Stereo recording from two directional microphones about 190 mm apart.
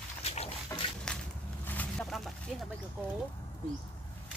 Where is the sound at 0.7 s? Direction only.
15° left (ahead or behind).